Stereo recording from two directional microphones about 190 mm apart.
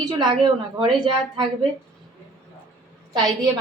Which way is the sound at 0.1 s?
25° right (ahead or behind).